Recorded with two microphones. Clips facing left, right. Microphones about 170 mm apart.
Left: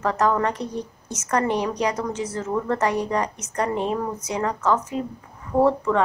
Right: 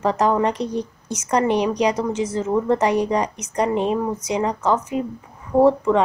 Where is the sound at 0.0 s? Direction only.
20° right (ahead or behind).